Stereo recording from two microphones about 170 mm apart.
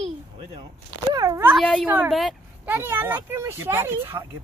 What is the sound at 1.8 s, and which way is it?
Speech, 10° right (ahead or behind).